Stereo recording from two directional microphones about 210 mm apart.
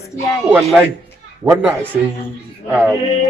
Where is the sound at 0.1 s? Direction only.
15° left (ahead or behind).